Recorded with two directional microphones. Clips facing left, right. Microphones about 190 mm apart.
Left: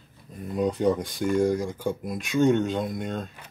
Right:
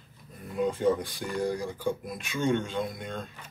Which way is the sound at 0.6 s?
45° left (ahead or behind).